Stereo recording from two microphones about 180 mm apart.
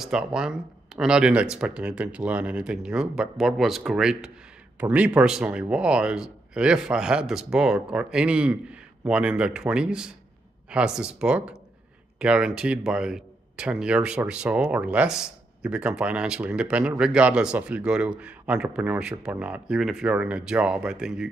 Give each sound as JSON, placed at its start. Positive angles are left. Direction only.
{"t": 0.0, "sound": "speech", "side_deg": -5}